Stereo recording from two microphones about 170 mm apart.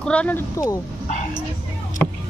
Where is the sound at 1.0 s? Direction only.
45° left (ahead or behind).